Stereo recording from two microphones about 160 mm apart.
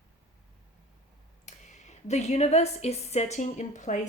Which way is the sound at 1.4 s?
45° left (ahead or behind).